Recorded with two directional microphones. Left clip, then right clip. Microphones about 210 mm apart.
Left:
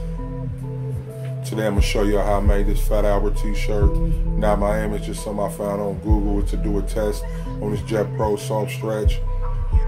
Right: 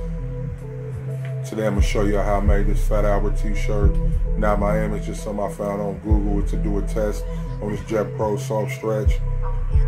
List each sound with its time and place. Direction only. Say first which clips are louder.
1.6 s speech: left 1 dB; 5° left (ahead or behind)